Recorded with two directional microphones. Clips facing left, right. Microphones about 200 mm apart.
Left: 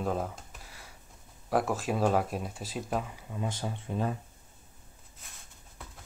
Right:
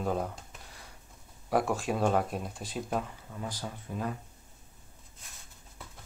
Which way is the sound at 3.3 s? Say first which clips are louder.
Left 4 dB; 20° left (ahead or behind).